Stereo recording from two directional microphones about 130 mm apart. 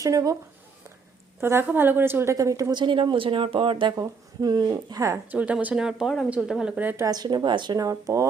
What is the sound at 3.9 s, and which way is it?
A woman's voice, 25° right (ahead or behind).